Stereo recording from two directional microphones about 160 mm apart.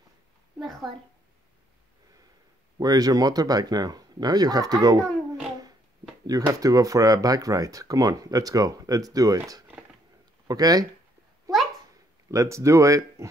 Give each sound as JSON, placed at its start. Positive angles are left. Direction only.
{"t": 0.6, "sound": "a child's voice", "side_deg": 0}
{"t": 2.8, "sound": "speech", "side_deg": -25}
{"t": 6.2, "sound": "speech", "side_deg": -25}
{"t": 12.3, "sound": "speech", "side_deg": -20}